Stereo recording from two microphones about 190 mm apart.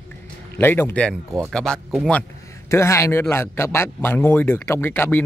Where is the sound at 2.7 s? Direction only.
15° left (ahead or behind).